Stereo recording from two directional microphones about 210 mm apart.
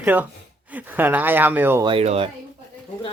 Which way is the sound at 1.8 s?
30° right (ahead or behind).